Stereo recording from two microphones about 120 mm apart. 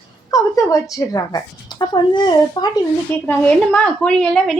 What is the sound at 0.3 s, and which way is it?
A woman's voice, 30° left (ahead or behind).